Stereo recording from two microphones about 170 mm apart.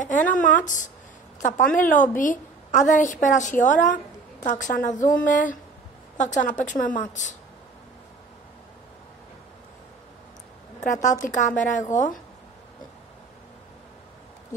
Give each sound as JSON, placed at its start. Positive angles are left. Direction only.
{"t": 0.3, "sound": "a woman's voice", "side_deg": 50}
{"t": 10.8, "sound": "a woman's voice", "side_deg": 45}